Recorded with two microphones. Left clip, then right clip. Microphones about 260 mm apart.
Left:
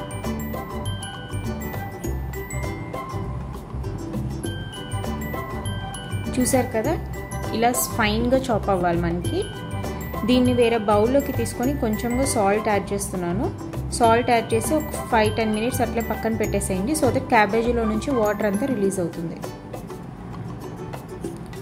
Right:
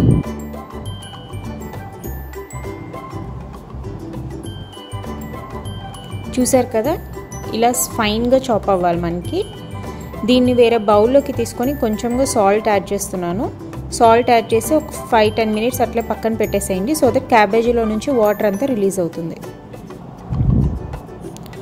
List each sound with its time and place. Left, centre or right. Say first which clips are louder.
6.3 s speech: right 6 dB; right